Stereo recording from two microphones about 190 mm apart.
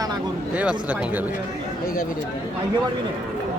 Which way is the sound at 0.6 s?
5° right (ahead or behind).